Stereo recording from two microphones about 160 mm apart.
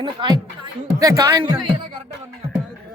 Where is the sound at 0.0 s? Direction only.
30° right (ahead or behind).